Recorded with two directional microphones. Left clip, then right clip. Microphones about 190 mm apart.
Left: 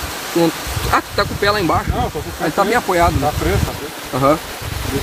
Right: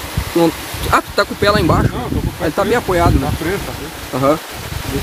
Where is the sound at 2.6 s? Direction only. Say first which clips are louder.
Even; 20° right (ahead or behind).